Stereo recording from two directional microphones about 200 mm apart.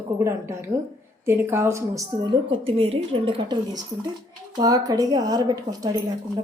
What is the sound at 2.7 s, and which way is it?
A woman's voice, 25° right (ahead or behind).